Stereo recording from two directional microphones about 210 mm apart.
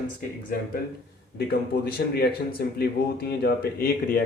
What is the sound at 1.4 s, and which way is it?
A man's voice, 50° left (ahead or behind).